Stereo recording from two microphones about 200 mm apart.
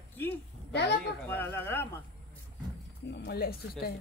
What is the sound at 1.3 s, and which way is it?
Speech, 10° left (ahead or behind).